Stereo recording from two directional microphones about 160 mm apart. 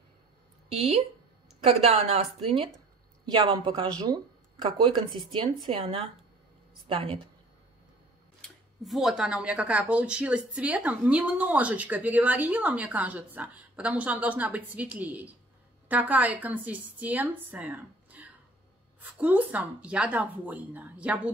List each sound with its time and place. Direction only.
0.7 s speech: 40° right (ahead or behind)
5.3 s speech: 35° right (ahead or behind)
8.4 s speech: centre (ahead or behind)